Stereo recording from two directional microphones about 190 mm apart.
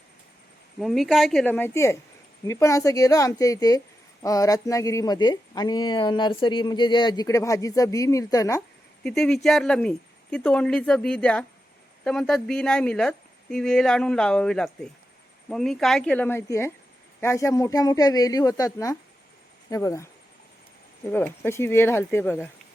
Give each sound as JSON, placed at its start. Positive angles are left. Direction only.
{"t": 0.8, "sound": "a woman's voice", "side_deg": 0}
{"t": 9.0, "sound": "a woman's voice", "side_deg": 5}
{"t": 21.1, "sound": "a woman's voice", "side_deg": 10}